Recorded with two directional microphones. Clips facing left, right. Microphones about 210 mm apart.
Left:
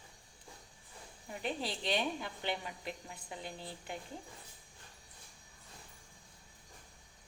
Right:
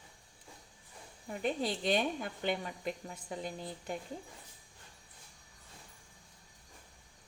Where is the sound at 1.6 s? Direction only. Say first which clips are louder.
Right 4 dB; 45° right (ahead or behind).